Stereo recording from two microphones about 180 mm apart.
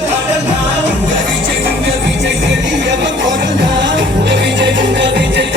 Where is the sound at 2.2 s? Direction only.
80° right.